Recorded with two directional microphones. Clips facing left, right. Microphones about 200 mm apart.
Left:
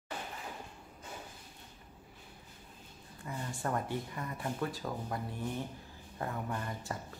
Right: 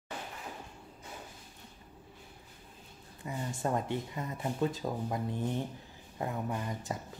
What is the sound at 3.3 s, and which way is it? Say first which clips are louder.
Speech: right 3 dB; 20° right (ahead or behind).